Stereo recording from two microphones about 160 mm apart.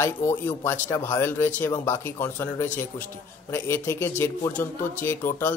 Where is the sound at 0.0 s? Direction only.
15° left (ahead or behind).